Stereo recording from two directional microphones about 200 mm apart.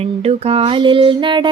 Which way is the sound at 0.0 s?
30° right (ahead or behind).